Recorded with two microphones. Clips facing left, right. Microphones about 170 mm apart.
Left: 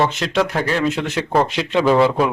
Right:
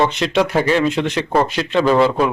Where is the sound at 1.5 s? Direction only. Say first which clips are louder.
Right 1 dB; 20° left (ahead or behind).